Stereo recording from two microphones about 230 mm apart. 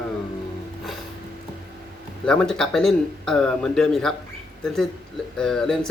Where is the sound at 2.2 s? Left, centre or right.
Centre.